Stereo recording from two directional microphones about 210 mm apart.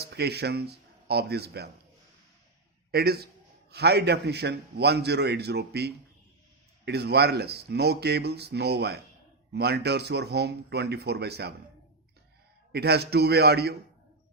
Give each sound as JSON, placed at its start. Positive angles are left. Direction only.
{"t": 0.0, "sound": "speech", "side_deg": -50}
{"t": 2.9, "sound": "a man's voice", "side_deg": -45}
{"t": 12.7, "sound": "a man's voice", "side_deg": -50}